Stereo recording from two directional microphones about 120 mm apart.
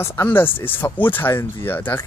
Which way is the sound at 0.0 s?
20° left (ahead or behind).